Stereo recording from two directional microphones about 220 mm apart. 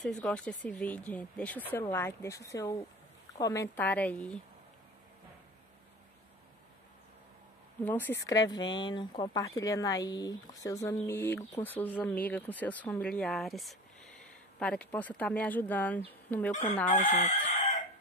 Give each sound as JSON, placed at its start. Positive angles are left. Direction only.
{"t": 0.0, "sound": "speech", "side_deg": 5}
{"t": 7.8, "sound": "speech", "side_deg": 10}
{"t": 16.8, "sound": "chicken", "side_deg": 35}